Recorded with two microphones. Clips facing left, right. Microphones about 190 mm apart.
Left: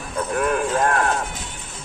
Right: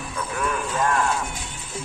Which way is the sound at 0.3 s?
50° left (ahead or behind).